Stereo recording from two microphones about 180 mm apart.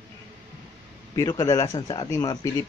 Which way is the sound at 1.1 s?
20° left (ahead or behind).